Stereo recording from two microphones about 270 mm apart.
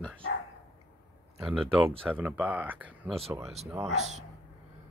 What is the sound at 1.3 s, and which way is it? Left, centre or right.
Speech, centre.